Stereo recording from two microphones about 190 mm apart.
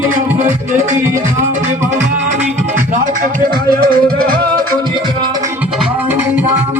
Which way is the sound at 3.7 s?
50° right (ahead or behind).